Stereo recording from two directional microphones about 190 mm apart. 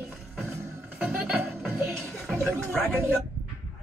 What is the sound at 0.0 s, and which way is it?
Music, 10° right (ahead or behind).